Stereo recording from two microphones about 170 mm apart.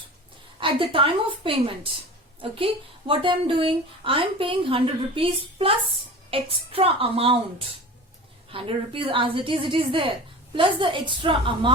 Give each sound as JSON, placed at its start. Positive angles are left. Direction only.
{"t": 0.6, "sound": "speech", "side_deg": -30}
{"t": 8.4, "sound": "speech", "side_deg": -30}